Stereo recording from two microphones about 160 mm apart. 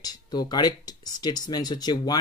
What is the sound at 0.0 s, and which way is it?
Speech, 25° left (ahead or behind).